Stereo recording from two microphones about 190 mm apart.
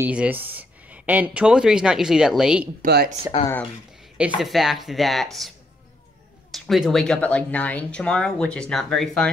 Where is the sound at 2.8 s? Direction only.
55° right (ahead or behind).